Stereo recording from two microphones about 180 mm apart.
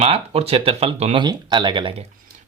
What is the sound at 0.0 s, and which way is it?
Speech, 35° right (ahead or behind).